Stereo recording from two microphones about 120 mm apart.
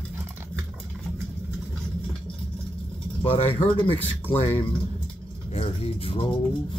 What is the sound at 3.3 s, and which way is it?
Speech, 50° left (ahead or behind).